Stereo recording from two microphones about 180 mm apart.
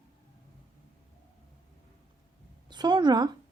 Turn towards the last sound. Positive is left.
turn(degrees=-25)  # may be behind; listen again after turning